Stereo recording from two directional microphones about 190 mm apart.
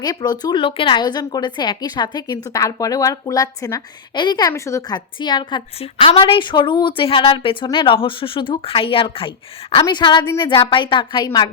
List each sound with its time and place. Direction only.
0.0 s a woman's voice: 20° left (ahead or behind)